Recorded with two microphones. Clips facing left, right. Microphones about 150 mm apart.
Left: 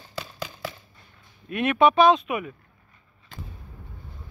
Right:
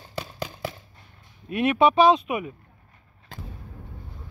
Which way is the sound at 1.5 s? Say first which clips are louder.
Even; 15° right (ahead or behind).